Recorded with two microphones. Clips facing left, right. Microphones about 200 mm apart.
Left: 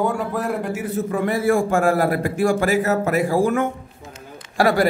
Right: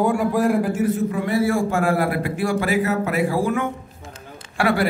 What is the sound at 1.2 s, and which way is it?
A man's voice, 50° left (ahead or behind).